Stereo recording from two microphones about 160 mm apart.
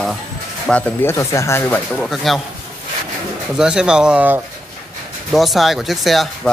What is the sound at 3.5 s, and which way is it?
Speech, 5° right (ahead or behind).